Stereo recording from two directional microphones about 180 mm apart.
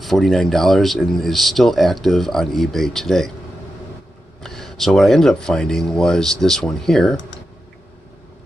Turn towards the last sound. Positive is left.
turn(degrees=0)  # may be behind; listen again after turning